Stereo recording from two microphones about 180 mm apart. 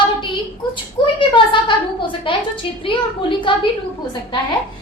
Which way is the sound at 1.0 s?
25° left (ahead or behind).